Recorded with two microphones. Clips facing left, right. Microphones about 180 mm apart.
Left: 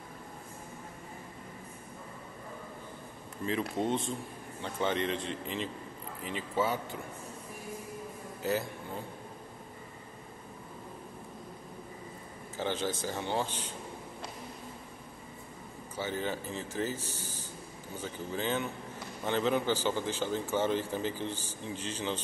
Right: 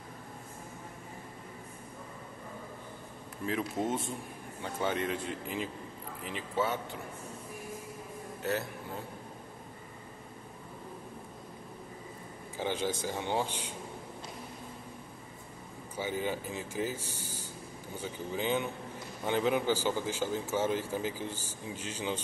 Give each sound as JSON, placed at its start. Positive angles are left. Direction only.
{"t": 3.4, "sound": "speech", "side_deg": -5}
{"t": 8.4, "sound": "a man's voice", "side_deg": 0}
{"t": 12.5, "sound": "speech", "side_deg": -10}
{"t": 16.0, "sound": "speech", "side_deg": -10}